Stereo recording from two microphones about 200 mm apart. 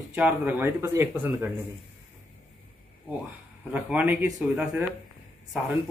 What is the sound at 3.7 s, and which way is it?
Speech, 10° right (ahead or behind).